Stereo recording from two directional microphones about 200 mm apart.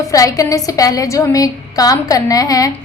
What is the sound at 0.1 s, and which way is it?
A woman's voice, 15° left (ahead or behind).